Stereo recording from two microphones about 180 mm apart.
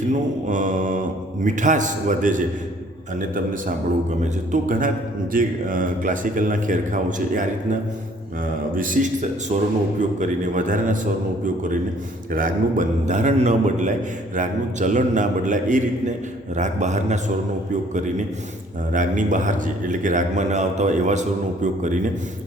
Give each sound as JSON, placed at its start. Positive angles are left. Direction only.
{"t": 0.1, "sound": "a man's voice", "side_deg": -45}
{"t": 4.2, "sound": "a man's voice", "side_deg": -45}
{"t": 18.9, "sound": "a man's voice", "side_deg": -45}